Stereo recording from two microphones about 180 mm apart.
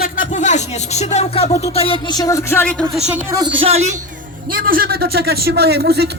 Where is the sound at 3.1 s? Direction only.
15° right (ahead or behind).